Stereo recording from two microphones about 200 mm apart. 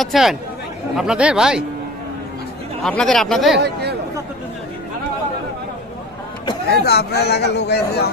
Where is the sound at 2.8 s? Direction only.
5° left (ahead or behind).